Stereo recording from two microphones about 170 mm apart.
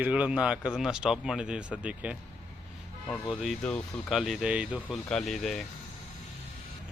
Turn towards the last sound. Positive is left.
turn(degrees=0)  # may be behind; listen again after turning